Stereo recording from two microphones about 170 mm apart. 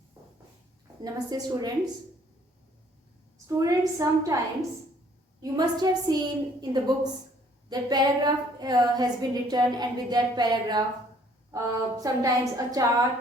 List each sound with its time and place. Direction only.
1.0 s a woman's voice: 20° right (ahead or behind)
3.3 s a woman's voice: 20° right (ahead or behind)
5.4 s a woman's voice: 25° right (ahead or behind)